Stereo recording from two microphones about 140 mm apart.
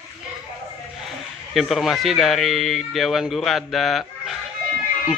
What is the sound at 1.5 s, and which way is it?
Speech, centre (ahead or behind).